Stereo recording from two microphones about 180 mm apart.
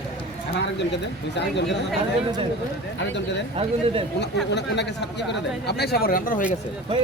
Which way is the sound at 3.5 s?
30° right (ahead or behind).